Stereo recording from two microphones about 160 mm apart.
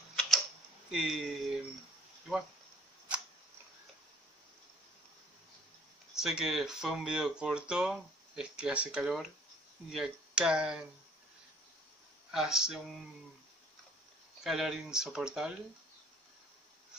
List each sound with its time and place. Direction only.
0.1 s a sound: centre (ahead or behind)
6.1 s speech: 5° right (ahead or behind)
12.3 s speech: 5° right (ahead or behind)
14.4 s speech: centre (ahead or behind)